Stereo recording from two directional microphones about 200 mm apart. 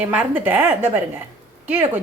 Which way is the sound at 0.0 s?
10° right (ahead or behind).